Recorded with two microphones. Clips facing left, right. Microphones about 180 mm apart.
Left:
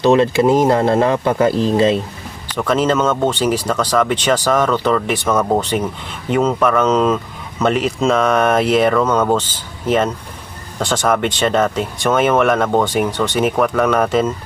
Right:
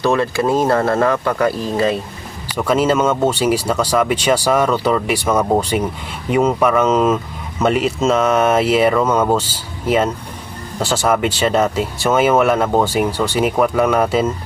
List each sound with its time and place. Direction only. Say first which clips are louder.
0.0 s speech: left 4 dB; 20° left (ahead or behind)
2.5 s speech: right 1 dB; 10° right (ahead or behind)